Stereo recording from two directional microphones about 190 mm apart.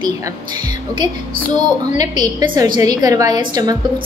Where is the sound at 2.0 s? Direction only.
20° right (ahead or behind).